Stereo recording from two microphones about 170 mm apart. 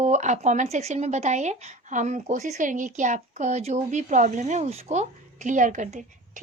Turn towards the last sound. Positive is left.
turn(degrees=-45)  # may be behind; listen again after turning